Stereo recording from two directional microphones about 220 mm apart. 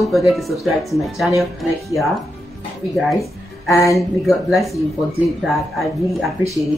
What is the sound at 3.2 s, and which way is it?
Music, 15° left (ahead or behind).